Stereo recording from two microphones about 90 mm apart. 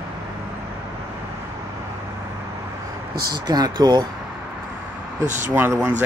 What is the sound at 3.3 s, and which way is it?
Speech, 50° right (ahead or behind).